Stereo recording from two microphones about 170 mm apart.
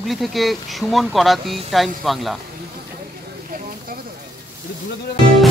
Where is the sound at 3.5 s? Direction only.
55° right (ahead or behind).